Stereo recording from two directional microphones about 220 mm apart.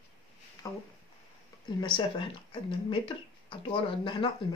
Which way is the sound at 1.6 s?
20° left (ahead or behind).